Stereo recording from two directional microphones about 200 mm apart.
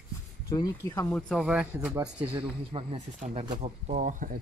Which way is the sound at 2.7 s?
30° right (ahead or behind).